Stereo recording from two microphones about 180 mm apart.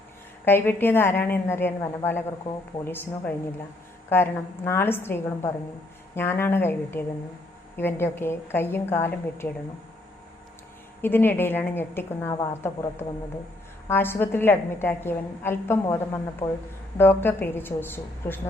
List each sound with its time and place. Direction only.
0.4 s a woman's voice: 10° left (ahead or behind)
11.0 s a woman's voice: 10° left (ahead or behind)